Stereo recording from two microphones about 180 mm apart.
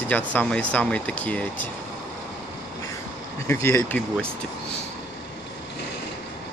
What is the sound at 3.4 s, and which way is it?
Speech, 15° left (ahead or behind).